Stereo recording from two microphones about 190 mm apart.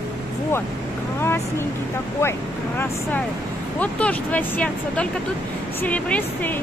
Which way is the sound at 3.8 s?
10° left (ahead or behind).